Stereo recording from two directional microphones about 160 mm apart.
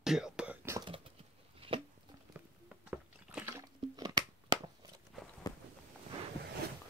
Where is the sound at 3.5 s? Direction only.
20° right (ahead or behind).